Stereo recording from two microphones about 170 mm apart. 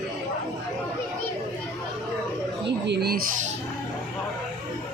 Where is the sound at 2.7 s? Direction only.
85° right.